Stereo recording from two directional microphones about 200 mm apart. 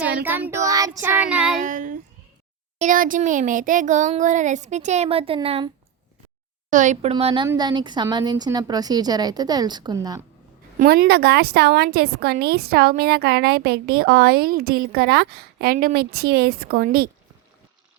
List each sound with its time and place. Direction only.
0.2 s speech: 10° right (ahead or behind)
1.6 s speech: 40° right (ahead or behind)
6.7 s a woman's voice: 40° right (ahead or behind); by 10.2 s 20° right (ahead or behind)
10.8 s a woman's voice: 50° right (ahead or behind)